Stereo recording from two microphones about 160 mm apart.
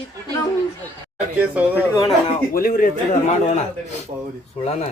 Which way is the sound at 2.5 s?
65° left (ahead or behind).